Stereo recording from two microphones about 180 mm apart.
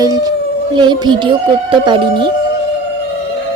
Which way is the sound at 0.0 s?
20° right (ahead or behind).